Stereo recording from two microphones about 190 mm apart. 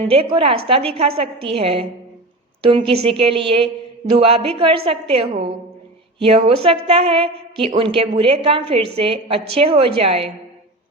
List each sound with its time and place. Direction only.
0.0 s a woman's voice: 30° right (ahead or behind)